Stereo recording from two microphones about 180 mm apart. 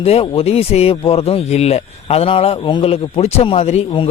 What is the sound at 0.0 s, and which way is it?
Speech, 35° left (ahead or behind).